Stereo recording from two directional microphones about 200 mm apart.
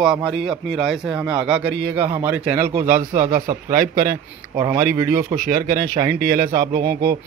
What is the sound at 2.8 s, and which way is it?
Speech, 40° right (ahead or behind).